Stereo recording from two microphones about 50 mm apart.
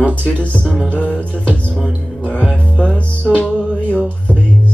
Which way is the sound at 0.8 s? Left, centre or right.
Left.